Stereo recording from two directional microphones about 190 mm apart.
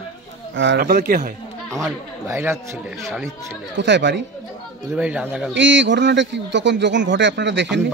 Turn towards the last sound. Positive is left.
turn(degrees=-65)  # may be behind; listen again after turning